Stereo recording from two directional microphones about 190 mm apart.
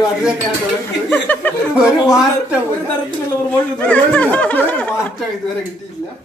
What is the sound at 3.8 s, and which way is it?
Speech, 5° left (ahead or behind).